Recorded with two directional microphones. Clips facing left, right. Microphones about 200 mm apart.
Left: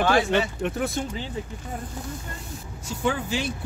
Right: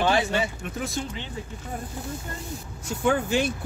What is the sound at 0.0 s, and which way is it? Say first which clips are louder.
Speech: left 1 dB; 20° right (ahead or behind).